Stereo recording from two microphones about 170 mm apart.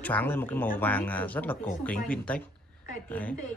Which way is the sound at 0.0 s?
10° left (ahead or behind).